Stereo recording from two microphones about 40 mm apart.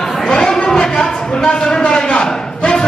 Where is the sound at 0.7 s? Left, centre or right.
Centre.